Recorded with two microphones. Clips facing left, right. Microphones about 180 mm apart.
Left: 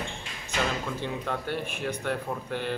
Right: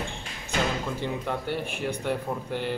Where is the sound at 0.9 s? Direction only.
15° right (ahead or behind).